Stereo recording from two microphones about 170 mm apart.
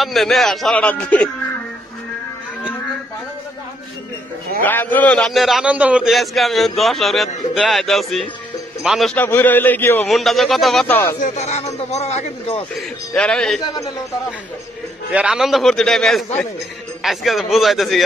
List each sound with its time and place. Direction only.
0.0 s a man's voice: centre (ahead or behind)
4.6 s a man's voice: 10° left (ahead or behind)
9.1 s a man's voice: 10° left (ahead or behind)
10.1 s a man's voice: centre (ahead or behind)
11.1 s speech: 45° left (ahead or behind)
13.1 s a man's voice: 5° left (ahead or behind)
15.1 s a man's voice: 5° right (ahead or behind)